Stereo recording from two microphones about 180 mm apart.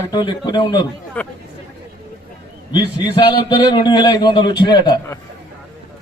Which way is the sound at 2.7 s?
25° left (ahead or behind).